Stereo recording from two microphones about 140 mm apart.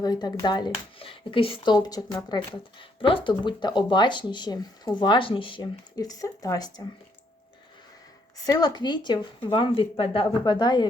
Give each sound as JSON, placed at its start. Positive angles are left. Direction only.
{"t": 0.0, "sound": "speech", "side_deg": 30}
{"t": 8.4, "sound": "speech", "side_deg": 30}